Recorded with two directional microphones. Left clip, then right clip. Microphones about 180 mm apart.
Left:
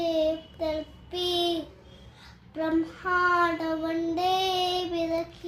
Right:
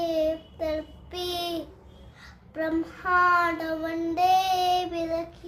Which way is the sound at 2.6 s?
20° right (ahead or behind).